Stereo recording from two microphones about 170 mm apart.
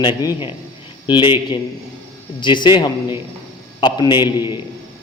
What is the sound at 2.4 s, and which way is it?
A man's voice, 25° left (ahead or behind).